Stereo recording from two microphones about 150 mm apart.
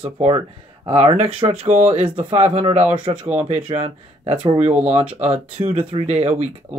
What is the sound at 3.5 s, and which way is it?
Speech, 40° right (ahead or behind).